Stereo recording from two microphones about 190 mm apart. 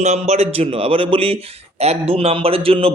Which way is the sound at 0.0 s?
35° right (ahead or behind).